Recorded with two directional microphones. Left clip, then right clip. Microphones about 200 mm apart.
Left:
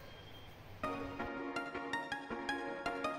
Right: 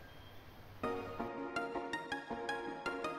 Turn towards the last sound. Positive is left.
turn(degrees=0)  # may be behind; listen again after turning